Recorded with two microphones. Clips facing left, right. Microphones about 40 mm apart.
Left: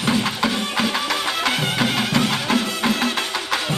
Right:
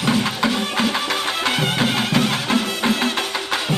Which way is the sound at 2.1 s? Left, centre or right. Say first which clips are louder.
Right 1 dB; right.